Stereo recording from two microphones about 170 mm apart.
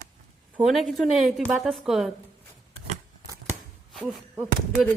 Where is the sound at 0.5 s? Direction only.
Centre (ahead or behind).